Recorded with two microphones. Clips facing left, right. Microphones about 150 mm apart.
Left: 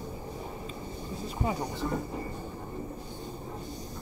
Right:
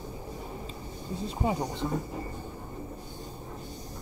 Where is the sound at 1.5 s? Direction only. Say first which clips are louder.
Right 2 dB; 20° right (ahead or behind).